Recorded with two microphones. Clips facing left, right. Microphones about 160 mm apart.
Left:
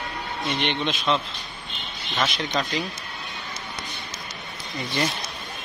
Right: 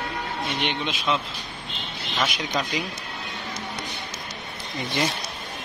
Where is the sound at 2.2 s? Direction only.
10° right (ahead or behind).